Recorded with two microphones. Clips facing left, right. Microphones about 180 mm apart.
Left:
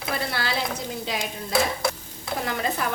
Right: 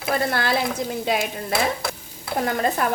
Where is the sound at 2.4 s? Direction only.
50° right (ahead or behind).